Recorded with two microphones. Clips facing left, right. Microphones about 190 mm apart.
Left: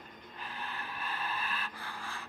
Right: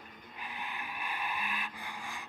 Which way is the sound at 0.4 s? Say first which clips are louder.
Even; 15° right (ahead or behind).